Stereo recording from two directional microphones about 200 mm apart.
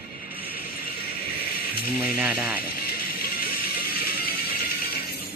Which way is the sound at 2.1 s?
10° right (ahead or behind).